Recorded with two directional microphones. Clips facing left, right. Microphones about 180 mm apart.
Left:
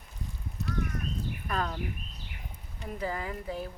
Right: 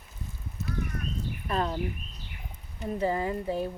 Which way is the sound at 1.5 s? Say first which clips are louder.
Right 4 dB; 25° right (ahead or behind).